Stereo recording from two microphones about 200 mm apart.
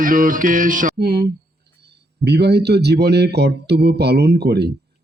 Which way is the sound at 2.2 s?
55° right (ahead or behind).